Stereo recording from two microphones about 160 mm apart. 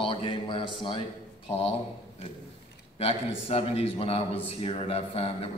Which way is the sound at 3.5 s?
40° left (ahead or behind).